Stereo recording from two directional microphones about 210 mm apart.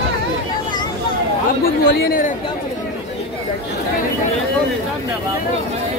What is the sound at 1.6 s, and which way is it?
Speech, 45° left (ahead or behind).